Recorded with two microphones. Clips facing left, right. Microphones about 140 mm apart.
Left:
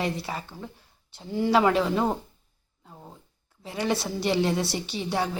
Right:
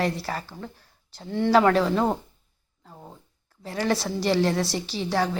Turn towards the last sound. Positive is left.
turn(degrees=0)  # may be behind; listen again after turning